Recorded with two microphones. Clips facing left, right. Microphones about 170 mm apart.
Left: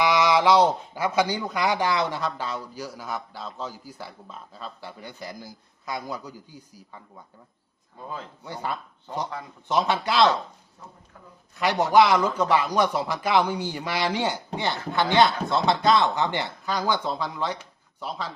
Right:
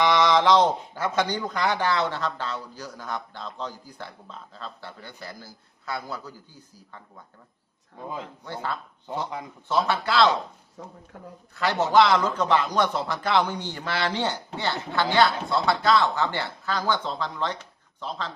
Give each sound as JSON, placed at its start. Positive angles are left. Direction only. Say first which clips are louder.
{"t": 0.0, "sound": "a man's voice", "louder": "even", "side_deg": 10}
{"t": 8.0, "sound": "speech", "louder": "right 2 dB", "side_deg": -15}
{"t": 8.4, "sound": "a man's voice", "louder": "left 1 dB", "side_deg": 15}
{"t": 11.5, "sound": "a man's voice", "louder": "left 1 dB", "side_deg": 15}